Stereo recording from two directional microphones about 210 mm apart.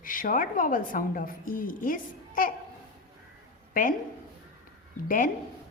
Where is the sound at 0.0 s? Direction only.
40° left (ahead or behind).